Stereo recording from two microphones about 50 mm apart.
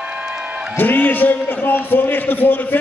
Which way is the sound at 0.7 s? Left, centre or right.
Left.